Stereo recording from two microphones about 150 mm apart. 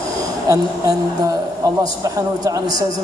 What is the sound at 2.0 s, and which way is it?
Speech, 25° right (ahead or behind).